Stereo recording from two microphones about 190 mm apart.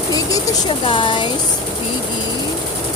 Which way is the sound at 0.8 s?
25° left (ahead or behind).